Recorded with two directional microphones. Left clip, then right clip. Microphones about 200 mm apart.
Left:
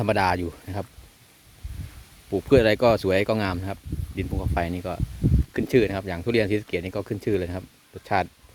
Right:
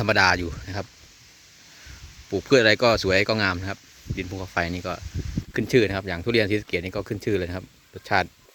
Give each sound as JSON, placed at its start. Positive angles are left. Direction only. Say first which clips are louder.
{"t": 0.0, "sound": "speech", "louder": "right 3 dB", "side_deg": 10}
{"t": 2.3, "sound": "speech", "louder": "right 1 dB", "side_deg": 10}